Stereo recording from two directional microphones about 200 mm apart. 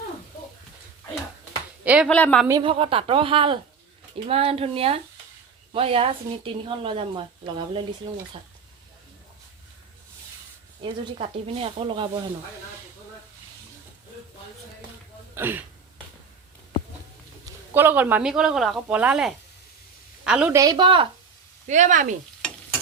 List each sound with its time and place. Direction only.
1.8 s speech: 5° right (ahead or behind)
2.0 s a woman's voice: 5° left (ahead or behind)
2.5 s a woman's voice: 25° right (ahead or behind)
11.2 s a woman's voice: 30° right (ahead or behind)
15.4 s speech: 10° right (ahead or behind)
17.4 s a woman's voice: 10° right (ahead or behind)
20.6 s a woman's voice: 20° right (ahead or behind)
21.7 s speech: 40° right (ahead or behind)